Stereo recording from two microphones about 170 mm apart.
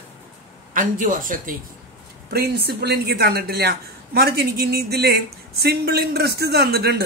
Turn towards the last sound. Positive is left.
turn(degrees=-70)  # may be behind; listen again after turning